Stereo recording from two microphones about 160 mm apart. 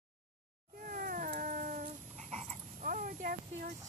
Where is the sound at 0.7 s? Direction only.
60° right (ahead or behind).